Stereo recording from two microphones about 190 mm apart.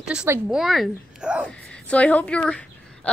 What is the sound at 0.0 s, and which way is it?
A woman's voice, 5° right (ahead or behind).